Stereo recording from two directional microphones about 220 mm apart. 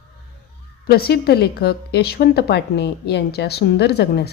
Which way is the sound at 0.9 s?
45° left (ahead or behind).